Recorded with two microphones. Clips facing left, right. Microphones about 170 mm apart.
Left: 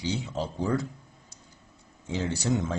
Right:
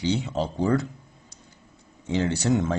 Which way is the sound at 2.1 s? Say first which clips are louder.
Right 5 dB; 70° right (ahead or behind).